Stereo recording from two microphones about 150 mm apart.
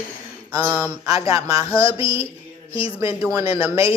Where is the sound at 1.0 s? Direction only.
25° right (ahead or behind).